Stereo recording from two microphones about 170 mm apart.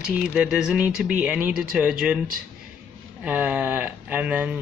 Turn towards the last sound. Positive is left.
turn(degrees=-10)  # may be behind; listen again after turning